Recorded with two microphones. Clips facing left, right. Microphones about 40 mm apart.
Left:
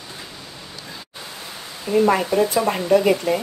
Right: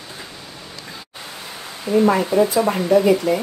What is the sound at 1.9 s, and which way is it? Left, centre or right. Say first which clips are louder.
Speech: right 1 dB; right.